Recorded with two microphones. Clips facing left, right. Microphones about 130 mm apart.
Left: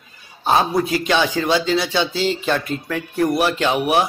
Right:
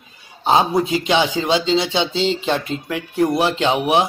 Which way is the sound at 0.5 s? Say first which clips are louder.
Right 1 dB; 20° right (ahead or behind).